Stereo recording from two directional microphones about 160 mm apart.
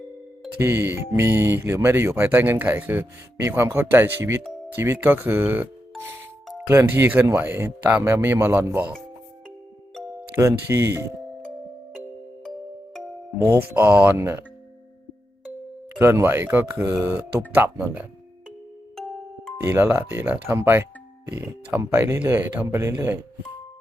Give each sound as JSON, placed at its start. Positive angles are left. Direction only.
{"t": 0.6, "sound": "speech", "side_deg": -15}
{"t": 10.3, "sound": "speech", "side_deg": -15}
{"t": 13.7, "sound": "speech", "side_deg": -10}
{"t": 16.0, "sound": "speech", "side_deg": -15}
{"t": 19.6, "sound": "speech", "side_deg": -10}